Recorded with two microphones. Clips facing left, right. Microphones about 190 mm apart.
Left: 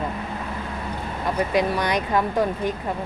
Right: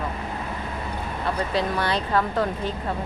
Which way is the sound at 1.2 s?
15° left (ahead or behind).